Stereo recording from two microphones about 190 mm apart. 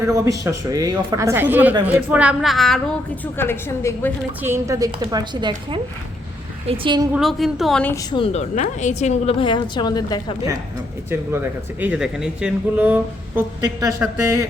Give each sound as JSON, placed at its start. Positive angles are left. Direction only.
{"t": 0.0, "sound": "a woman's voice", "side_deg": -15}
{"t": 4.4, "sound": "a woman's voice", "side_deg": -15}
{"t": 7.1, "sound": "a woman's voice", "side_deg": 0}
{"t": 8.1, "sound": "a woman's voice", "side_deg": 30}
{"t": 11.1, "sound": "speech", "side_deg": -10}